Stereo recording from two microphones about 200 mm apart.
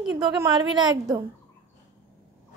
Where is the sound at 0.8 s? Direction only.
20° right (ahead or behind).